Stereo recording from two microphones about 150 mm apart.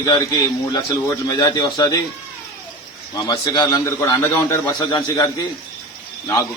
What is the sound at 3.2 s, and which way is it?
A man's voice, 25° left (ahead or behind).